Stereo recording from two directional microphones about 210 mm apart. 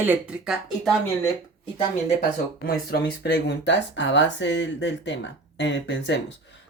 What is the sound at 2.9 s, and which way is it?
Speech, 55° left (ahead or behind).